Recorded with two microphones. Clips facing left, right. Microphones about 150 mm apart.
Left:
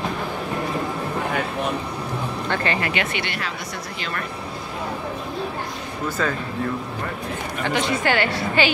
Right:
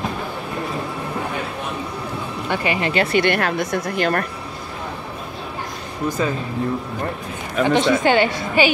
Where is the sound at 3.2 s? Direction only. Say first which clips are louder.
Right 10 dB; 55° right (ahead or behind).